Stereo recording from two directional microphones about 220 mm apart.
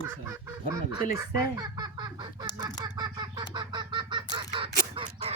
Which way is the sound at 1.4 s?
15° right (ahead or behind).